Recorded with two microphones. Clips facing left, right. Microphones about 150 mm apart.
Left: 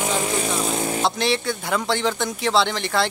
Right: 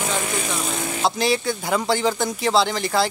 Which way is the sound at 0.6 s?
35° left (ahead or behind).